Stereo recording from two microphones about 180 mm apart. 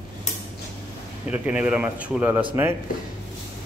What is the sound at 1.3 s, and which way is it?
Speech, 5° right (ahead or behind).